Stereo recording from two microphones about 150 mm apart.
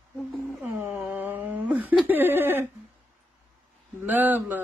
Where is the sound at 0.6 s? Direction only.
15° right (ahead or behind).